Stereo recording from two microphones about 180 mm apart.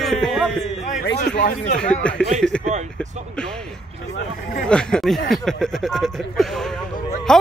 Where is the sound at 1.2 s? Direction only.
45° left (ahead or behind).